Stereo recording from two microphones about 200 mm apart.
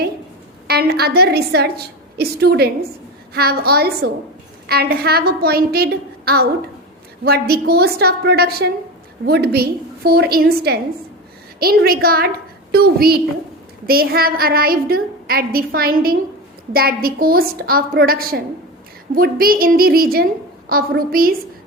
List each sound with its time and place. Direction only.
0.7 s a woman's voice: 50° right (ahead or behind)